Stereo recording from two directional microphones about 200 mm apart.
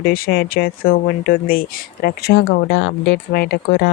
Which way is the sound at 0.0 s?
50° left (ahead or behind).